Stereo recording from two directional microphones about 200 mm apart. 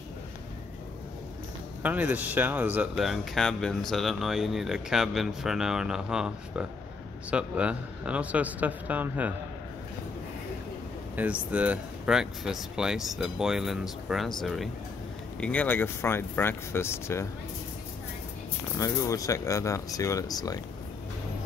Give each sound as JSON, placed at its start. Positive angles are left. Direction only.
{"t": 1.8, "sound": "speech", "side_deg": -10}
{"t": 11.1, "sound": "speech", "side_deg": -5}
{"t": 18.8, "sound": "speech", "side_deg": 15}